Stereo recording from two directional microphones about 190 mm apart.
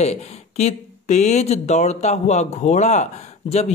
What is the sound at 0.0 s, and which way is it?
Speech, 35° left (ahead or behind).